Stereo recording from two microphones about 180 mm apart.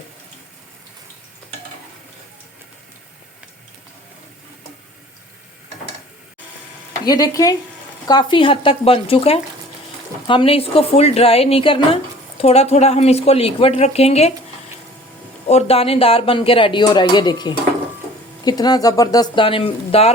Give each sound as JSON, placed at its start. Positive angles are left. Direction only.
{"t": 7.0, "sound": "speech", "side_deg": 20}
{"t": 15.4, "sound": "speech", "side_deg": 35}